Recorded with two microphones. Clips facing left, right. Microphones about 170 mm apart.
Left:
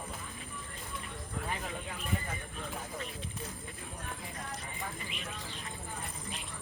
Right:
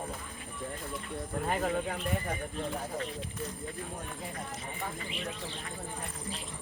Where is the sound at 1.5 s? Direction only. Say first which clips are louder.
Right 10 dB; 55° right (ahead or behind).